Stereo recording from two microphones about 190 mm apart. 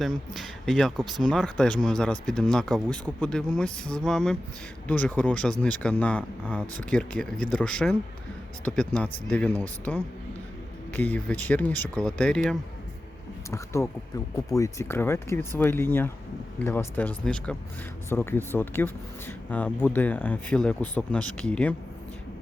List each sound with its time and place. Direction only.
0.0 s speech: centre (ahead or behind)
14.5 s speech: 15° left (ahead or behind)